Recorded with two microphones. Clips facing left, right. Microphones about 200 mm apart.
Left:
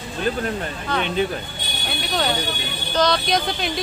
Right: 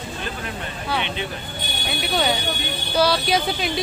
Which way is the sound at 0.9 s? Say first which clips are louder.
Left 5 dB; 10° right (ahead or behind).